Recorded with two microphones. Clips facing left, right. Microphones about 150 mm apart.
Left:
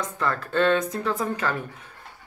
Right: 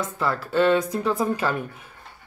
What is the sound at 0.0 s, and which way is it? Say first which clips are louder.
Speech: right 1 dB; 5° right (ahead or behind).